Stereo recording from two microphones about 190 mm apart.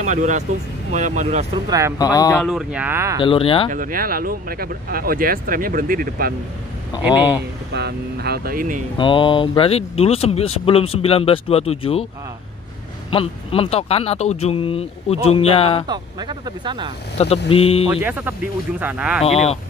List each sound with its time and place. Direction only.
0.0 s speech: 40° right (ahead or behind)
1.7 s speech: 15° right (ahead or behind)
2.0 s speech: 20° left (ahead or behind)
2.4 s speech: 5° right (ahead or behind)
3.2 s speech: 25° left (ahead or behind)
3.7 s speech: 45° right (ahead or behind)
7.0 s speech: 5° right (ahead or behind)
7.7 s speech: 60° right (ahead or behind)
8.9 s speech: 25° left (ahead or behind)
13.1 s speech: 30° left (ahead or behind)
15.9 s speech: 20° right (ahead or behind)
17.2 s speech: 30° left (ahead or behind)
17.8 s speech: 10° right (ahead or behind)
19.2 s speech: 35° left (ahead or behind)